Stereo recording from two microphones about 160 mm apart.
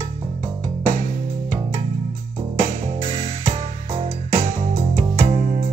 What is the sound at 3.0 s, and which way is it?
Music, 40° right (ahead or behind).